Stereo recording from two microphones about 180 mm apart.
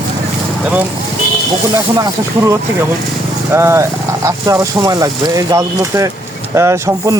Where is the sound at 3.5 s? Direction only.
15° right (ahead or behind).